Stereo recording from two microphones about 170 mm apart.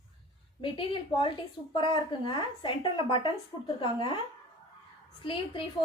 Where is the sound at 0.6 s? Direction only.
30° left (ahead or behind).